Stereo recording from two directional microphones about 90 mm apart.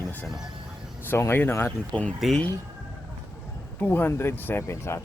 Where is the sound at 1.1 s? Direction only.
25° left (ahead or behind).